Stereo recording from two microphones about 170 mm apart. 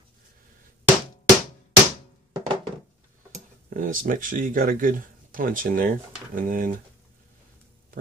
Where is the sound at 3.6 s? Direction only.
55° right (ahead or behind).